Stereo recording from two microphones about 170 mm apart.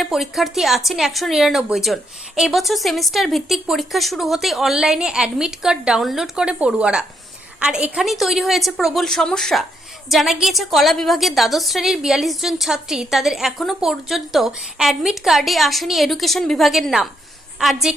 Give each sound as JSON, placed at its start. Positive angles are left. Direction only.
{"t": 0.0, "sound": "a woman's voice", "side_deg": 0}